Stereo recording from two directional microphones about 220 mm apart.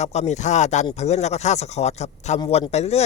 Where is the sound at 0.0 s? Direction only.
30° left (ahead or behind).